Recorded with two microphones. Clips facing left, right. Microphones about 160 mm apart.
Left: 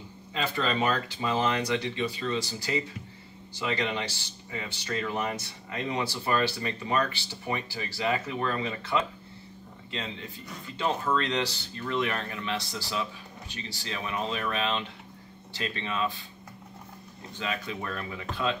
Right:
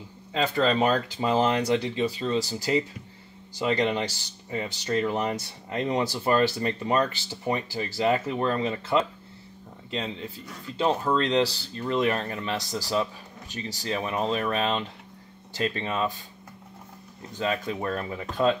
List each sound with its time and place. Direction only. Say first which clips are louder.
0.4 s speech: right 5 dB; 40° right (ahead or behind)
10.8 s speech: right 4 dB; 30° right (ahead or behind)
17.4 s speech: right 6 dB; 40° right (ahead or behind)